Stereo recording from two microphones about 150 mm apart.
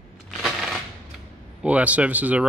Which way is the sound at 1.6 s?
10° right (ahead or behind).